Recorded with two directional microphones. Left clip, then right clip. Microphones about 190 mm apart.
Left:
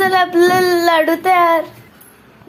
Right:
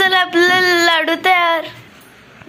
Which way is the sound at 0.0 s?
Centre (ahead or behind).